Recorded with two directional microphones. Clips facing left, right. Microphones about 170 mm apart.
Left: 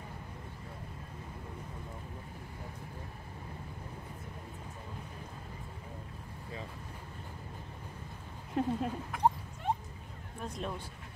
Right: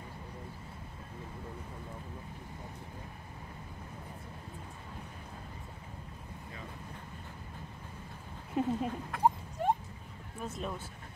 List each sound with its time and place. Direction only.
8.5 s speech: centre (ahead or behind)
9.6 s a sound: 40° right (ahead or behind)
10.4 s speech: 5° right (ahead or behind)